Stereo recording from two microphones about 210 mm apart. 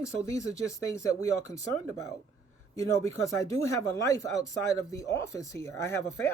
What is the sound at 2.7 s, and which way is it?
Speech, 15° left (ahead or behind).